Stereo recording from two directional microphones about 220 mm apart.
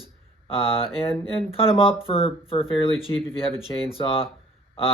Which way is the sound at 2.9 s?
Centre (ahead or behind).